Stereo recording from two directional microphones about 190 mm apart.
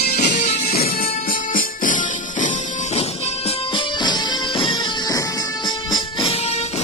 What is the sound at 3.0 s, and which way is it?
Music, 30° left (ahead or behind).